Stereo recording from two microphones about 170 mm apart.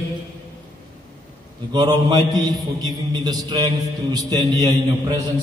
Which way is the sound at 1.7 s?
25° right (ahead or behind).